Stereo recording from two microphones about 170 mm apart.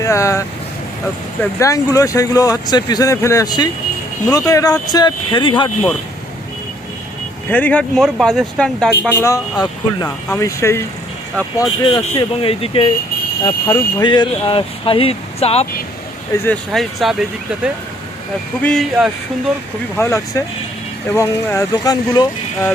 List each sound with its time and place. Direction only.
0.0 s speech: 15° left (ahead or behind)
7.5 s speech: 10° left (ahead or behind)
9.2 s speech: 20° left (ahead or behind)
11.9 s speech: 30° left (ahead or behind)
16.3 s speech: 15° left (ahead or behind)
16.7 s speech: centre (ahead or behind)
20.0 s speech: 15° left (ahead or behind)